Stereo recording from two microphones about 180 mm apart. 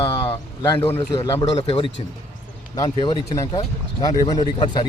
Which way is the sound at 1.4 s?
35° left (ahead or behind).